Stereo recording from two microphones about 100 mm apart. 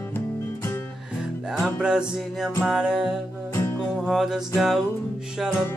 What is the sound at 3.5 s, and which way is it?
Music, 25° left (ahead or behind).